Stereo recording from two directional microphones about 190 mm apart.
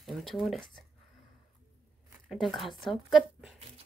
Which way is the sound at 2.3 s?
Centre (ahead or behind).